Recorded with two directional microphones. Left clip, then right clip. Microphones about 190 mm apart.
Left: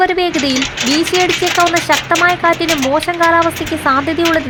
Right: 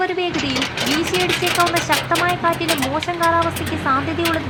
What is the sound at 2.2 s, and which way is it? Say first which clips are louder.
Speech: left 6 dB; 25° left (ahead or behind).